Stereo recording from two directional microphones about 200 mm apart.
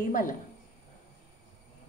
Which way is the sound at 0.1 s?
40° left (ahead or behind).